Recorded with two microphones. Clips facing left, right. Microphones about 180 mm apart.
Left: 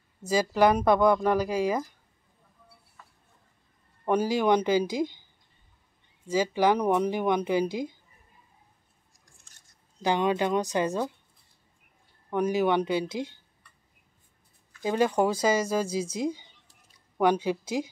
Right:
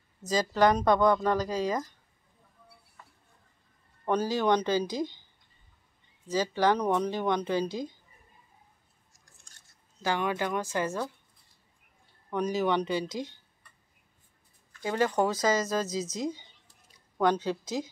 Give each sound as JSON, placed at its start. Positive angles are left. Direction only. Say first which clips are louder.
{"t": 0.2, "sound": "speech", "louder": "left 2 dB", "side_deg": 10}
{"t": 4.0, "sound": "speech", "louder": "left 3 dB", "side_deg": 10}
{"t": 6.2, "sound": "speech", "louder": "left 2 dB", "side_deg": 10}
{"t": 10.0, "sound": "a woman's voice", "louder": "left 4 dB", "side_deg": 20}
{"t": 12.3, "sound": "speech", "louder": "left 3 dB", "side_deg": 10}
{"t": 14.8, "sound": "speech", "louder": "left 3 dB", "side_deg": 15}